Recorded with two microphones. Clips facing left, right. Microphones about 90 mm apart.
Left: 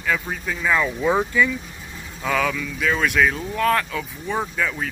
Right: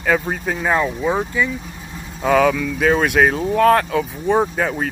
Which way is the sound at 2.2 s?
40° right (ahead or behind).